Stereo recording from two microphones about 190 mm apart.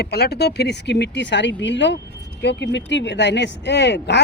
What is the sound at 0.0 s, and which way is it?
Speech, 60° left (ahead or behind).